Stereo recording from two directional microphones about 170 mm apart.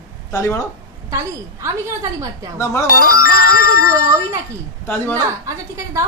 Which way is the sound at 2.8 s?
55° left (ahead or behind).